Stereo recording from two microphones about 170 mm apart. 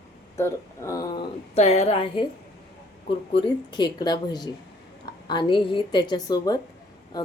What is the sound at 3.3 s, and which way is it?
A woman's voice, 25° left (ahead or behind).